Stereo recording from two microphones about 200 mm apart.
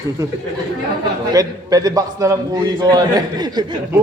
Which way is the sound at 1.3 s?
15° right (ahead or behind).